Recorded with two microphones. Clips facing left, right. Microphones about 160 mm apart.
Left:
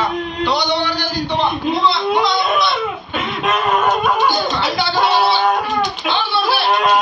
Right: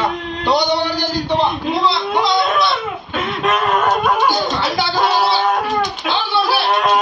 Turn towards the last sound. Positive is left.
turn(degrees=0)  # may be behind; listen again after turning